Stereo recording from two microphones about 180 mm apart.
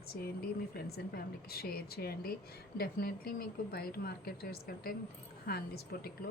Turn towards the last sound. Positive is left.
turn(degrees=60)  # may be behind; listen again after turning